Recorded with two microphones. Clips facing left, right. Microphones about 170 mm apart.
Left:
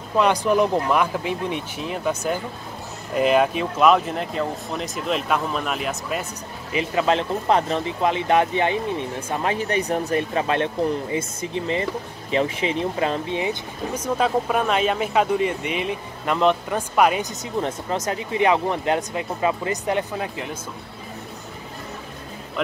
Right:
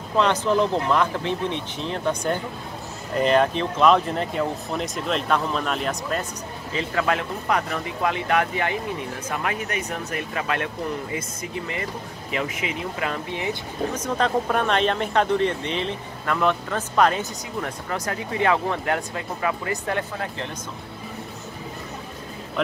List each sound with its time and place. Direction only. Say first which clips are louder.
0.2 s speech: left 2 dB; 10° left (ahead or behind)
6.7 s speech: left 3 dB; 20° left (ahead or behind)
17.6 s speech: left 5 dB; 20° left (ahead or behind)